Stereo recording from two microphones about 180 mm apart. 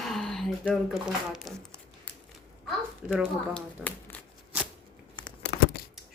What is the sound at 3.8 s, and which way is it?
Shuffling cards, 10° left (ahead or behind).